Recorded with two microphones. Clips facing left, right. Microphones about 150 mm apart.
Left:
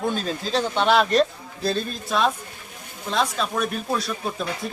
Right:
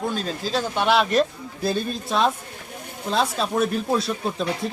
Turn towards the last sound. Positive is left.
turn(degrees=-25)  # may be behind; listen again after turning